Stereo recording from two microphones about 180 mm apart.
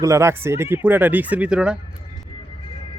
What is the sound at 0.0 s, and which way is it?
Speech, 15° right (ahead or behind).